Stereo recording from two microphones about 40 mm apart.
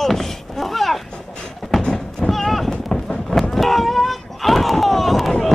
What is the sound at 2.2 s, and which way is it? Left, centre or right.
Run, centre.